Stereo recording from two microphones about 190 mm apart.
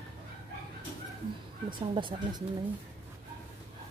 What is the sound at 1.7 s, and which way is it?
Speech, 25° right (ahead or behind).